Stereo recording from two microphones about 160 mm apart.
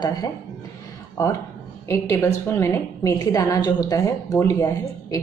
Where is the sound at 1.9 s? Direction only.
20° left (ahead or behind).